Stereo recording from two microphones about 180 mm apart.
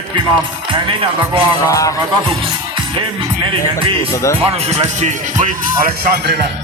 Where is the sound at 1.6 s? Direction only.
20° left (ahead or behind).